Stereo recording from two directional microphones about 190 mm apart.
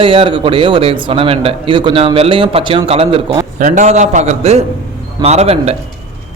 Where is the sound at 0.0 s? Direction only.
30° right (ahead or behind).